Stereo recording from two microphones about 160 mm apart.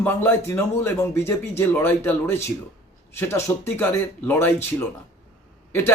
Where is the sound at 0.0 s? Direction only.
15° left (ahead or behind).